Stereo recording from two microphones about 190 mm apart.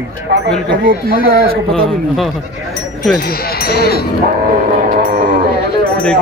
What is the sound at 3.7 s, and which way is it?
Speech, 55° left (ahead or behind).